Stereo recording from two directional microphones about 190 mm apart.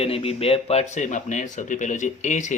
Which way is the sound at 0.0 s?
30° left (ahead or behind).